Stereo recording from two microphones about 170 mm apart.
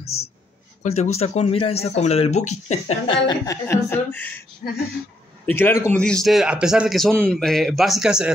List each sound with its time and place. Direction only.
0.8 s speech: 40° left (ahead or behind)
3.3 s speech: 20° left (ahead or behind)
5.5 s a man's voice: 15° left (ahead or behind); by 8.3 s 5° right (ahead or behind)